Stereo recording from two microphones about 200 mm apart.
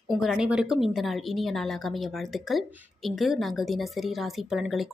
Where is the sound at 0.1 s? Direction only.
Centre (ahead or behind).